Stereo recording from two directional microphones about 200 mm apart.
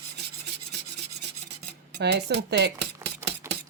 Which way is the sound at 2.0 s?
55° right (ahead or behind).